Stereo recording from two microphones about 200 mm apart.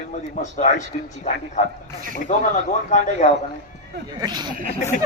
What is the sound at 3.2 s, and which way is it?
Speech, 40° left (ahead or behind).